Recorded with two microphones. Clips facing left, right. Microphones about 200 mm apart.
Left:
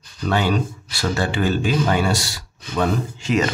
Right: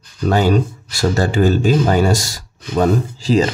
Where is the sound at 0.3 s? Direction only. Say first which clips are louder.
Right 5 dB; 40° right (ahead or behind).